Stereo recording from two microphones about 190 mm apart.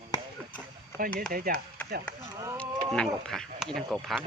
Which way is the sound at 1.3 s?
50° right (ahead or behind).